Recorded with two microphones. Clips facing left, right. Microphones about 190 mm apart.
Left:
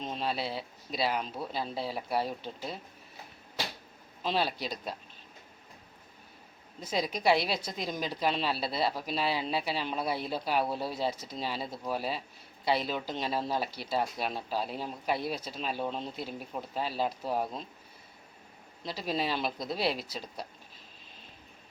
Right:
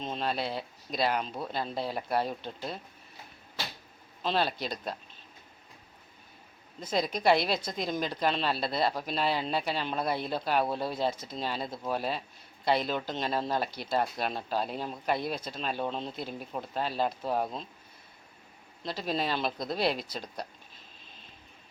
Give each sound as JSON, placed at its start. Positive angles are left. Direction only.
{"t": 0.0, "sound": "speech", "side_deg": 5}
{"t": 4.2, "sound": "speech", "side_deg": 10}
{"t": 6.7, "sound": "speech", "side_deg": 10}
{"t": 18.9, "sound": "speech", "side_deg": 10}